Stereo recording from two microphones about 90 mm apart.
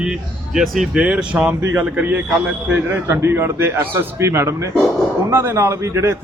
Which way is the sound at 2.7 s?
25° right (ahead or behind).